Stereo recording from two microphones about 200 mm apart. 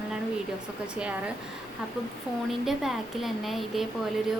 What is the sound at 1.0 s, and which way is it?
Speech, 5° right (ahead or behind).